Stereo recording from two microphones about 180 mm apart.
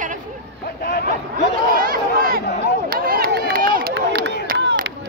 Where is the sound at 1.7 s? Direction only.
55° right (ahead or behind).